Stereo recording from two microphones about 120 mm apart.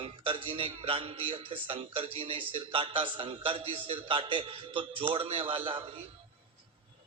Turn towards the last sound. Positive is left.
turn(degrees=-45)  # may be behind; listen again after turning